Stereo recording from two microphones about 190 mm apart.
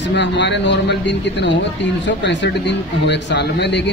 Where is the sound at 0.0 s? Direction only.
65° left (ahead or behind).